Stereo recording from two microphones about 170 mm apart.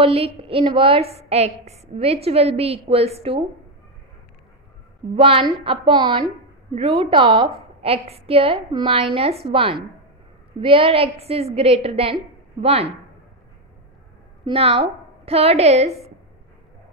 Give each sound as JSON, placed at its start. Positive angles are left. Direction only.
{"t": 0.0, "sound": "a woman's voice", "side_deg": -35}
{"t": 5.1, "sound": "a woman's voice", "side_deg": -30}
{"t": 14.4, "sound": "a woman's voice", "side_deg": -35}